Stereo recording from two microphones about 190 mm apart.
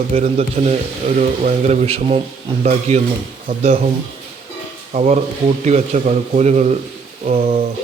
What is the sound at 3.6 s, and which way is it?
Speech, 30° right (ahead or behind).